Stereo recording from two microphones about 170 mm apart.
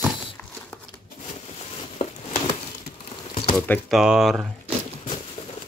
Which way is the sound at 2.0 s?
40° left (ahead or behind).